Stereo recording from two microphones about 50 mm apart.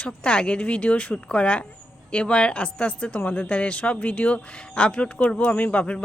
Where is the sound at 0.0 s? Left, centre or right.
Left.